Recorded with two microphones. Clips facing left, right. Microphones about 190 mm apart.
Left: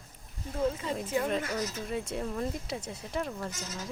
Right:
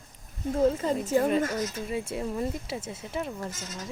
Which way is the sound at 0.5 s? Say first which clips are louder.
Right 6 dB; 45° right (ahead or behind).